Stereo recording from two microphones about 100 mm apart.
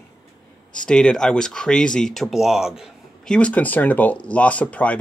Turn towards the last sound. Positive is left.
turn(degrees=15)  # may be behind; listen again after turning